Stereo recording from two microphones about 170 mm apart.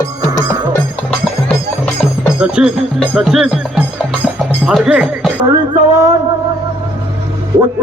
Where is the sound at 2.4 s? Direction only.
5° right (ahead or behind).